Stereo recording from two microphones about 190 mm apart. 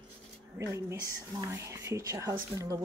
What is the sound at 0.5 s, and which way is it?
Speech, 15° right (ahead or behind).